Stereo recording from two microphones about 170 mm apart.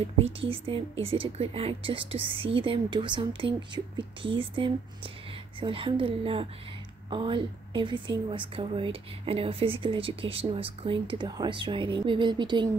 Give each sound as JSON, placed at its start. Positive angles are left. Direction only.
{"t": 0.0, "sound": "a woman's voice", "side_deg": -35}